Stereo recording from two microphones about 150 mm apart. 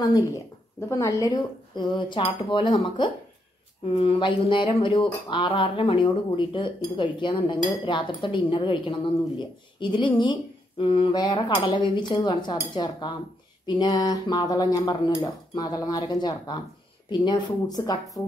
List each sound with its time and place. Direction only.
0.7 s speech: 20° left (ahead or behind)
3.8 s a sound: 40° left (ahead or behind)
13.7 s speech: 30° left (ahead or behind)